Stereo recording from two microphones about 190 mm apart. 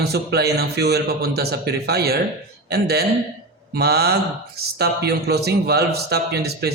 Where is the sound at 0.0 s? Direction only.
60° right (ahead or behind).